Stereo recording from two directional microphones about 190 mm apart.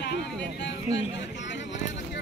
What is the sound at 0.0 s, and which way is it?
Speech, 65° left (ahead or behind).